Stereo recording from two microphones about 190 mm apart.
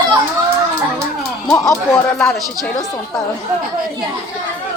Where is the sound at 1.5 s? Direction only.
15° left (ahead or behind).